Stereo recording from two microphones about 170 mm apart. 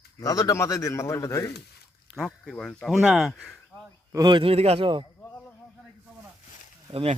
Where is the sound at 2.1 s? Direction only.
Centre (ahead or behind).